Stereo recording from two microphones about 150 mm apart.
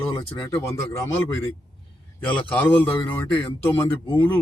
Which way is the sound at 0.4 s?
20° left (ahead or behind).